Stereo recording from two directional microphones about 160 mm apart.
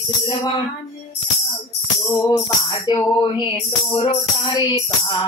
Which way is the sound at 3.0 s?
25° left (ahead or behind).